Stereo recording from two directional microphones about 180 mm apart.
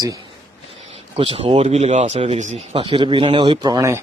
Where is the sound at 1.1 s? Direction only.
30° right (ahead or behind).